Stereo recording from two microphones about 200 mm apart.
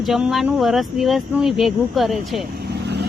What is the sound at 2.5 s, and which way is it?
Vehicle, 55° right (ahead or behind).